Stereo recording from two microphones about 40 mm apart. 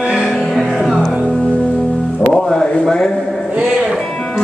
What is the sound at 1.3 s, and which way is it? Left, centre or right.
Music, centre.